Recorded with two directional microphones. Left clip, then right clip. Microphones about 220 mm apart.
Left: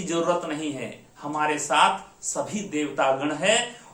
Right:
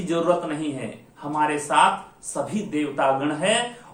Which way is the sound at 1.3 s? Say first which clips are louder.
Right 2 dB; 15° left (ahead or behind).